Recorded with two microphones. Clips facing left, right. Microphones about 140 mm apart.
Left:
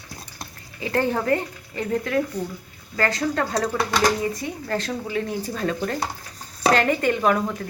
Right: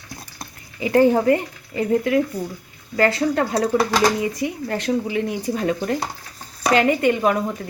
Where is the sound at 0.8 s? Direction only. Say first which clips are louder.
Right 8 dB; 15° right (ahead or behind).